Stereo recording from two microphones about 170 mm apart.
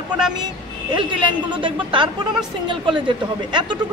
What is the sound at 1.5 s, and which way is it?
Speech, 30° right (ahead or behind).